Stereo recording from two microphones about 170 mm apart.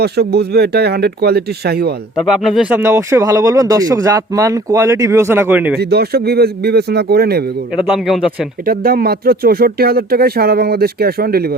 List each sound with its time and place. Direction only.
0.0 s speech: 70° right (ahead or behind)
2.1 s speech: centre (ahead or behind)
5.7 s speech: 70° right (ahead or behind)
7.8 s speech: centre (ahead or behind)
8.6 s speech: 60° right (ahead or behind)